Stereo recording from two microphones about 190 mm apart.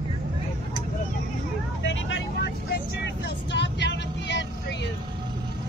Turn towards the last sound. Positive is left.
turn(degrees=65)  # may be behind; listen again after turning